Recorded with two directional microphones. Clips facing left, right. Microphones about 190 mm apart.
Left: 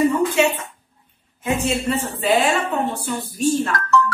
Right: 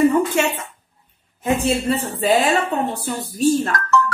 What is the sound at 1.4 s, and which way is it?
A woman's voice, 35° right (ahead or behind).